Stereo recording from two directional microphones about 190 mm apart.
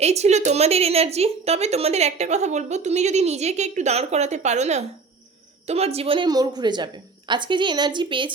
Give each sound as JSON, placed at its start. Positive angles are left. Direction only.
{"t": 0.0, "sound": "a woman's voice", "side_deg": -35}